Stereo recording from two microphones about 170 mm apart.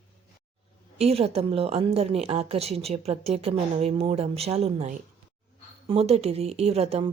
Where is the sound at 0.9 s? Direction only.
35° right (ahead or behind).